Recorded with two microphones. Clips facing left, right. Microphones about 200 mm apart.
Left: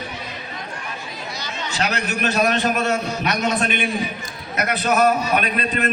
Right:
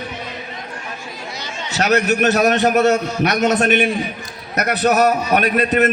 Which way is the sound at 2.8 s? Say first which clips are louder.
Right 6 dB; 45° right (ahead or behind).